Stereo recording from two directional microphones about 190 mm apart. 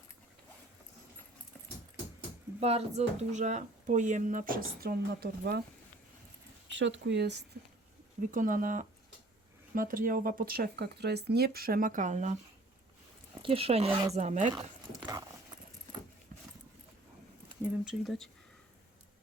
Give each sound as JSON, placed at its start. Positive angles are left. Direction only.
{"t": 2.6, "sound": "speech", "side_deg": -35}
{"t": 6.7, "sound": "speech", "side_deg": -75}
{"t": 8.3, "sound": "speech", "side_deg": -45}
{"t": 13.4, "sound": "speech", "side_deg": -30}
{"t": 14.5, "sound": "a sound", "side_deg": -20}
{"t": 17.6, "sound": "speech", "side_deg": 0}